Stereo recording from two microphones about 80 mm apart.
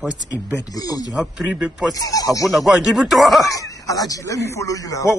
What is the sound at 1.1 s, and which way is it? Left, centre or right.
Speech, centre.